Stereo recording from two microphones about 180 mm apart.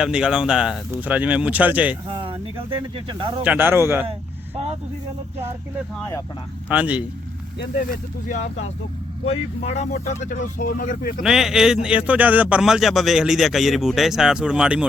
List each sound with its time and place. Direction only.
0.0 s speech: 5° right (ahead or behind)
2.0 s speech: 30° right (ahead or behind)
3.4 s speech: 10° right (ahead or behind)
6.0 s speech: 15° left (ahead or behind)
6.7 s speech: 10° right (ahead or behind)
9.2 s speech: 35° left (ahead or behind)
11.2 s a man's voice: 5° right (ahead or behind)